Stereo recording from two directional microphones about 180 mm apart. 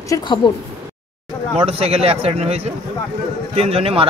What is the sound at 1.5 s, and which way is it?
A man's voice, 35° right (ahead or behind).